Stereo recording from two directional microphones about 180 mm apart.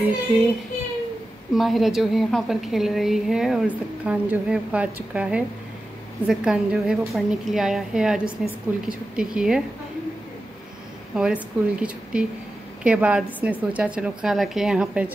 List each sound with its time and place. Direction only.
0.0 s a woman's voice: 5° right (ahead or behind)
1.5 s a woman's voice: centre (ahead or behind)
11.1 s a woman's voice: 5° right (ahead or behind)